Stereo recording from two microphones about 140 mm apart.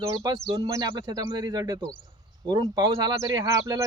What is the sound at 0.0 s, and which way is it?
Speech, 25° right (ahead or behind).